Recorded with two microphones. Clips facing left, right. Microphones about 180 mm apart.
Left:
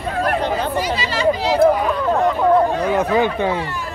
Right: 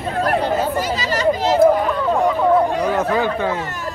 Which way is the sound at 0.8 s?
40° right (ahead or behind).